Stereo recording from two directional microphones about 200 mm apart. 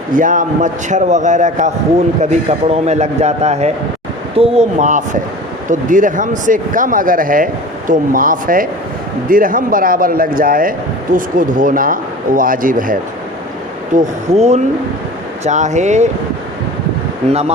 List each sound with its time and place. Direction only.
0.1 s a man's voice: 40° right (ahead or behind)